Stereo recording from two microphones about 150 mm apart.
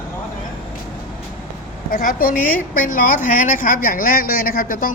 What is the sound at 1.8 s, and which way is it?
A woman's voice, 70° left (ahead or behind).